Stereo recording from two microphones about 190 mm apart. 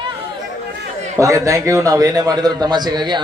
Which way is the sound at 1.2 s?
15° right (ahead or behind).